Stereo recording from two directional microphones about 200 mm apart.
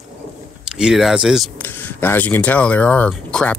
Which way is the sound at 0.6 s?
5° right (ahead or behind).